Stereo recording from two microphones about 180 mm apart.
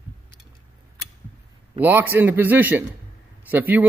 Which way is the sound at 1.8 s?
10° right (ahead or behind).